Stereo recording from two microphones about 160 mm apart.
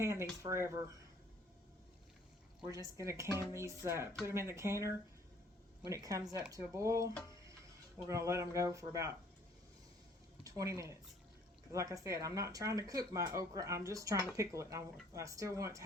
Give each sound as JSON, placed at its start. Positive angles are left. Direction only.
{"t": 0.0, "sound": "speech", "side_deg": -15}
{"t": 2.6, "sound": "speech", "side_deg": -20}
{"t": 10.4, "sound": "speech", "side_deg": -20}